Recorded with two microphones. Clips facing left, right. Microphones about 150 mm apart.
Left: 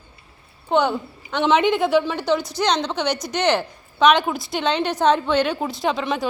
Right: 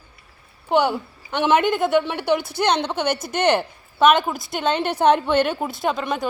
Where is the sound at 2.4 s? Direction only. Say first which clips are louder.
Right 1 dB; 60° right (ahead or behind).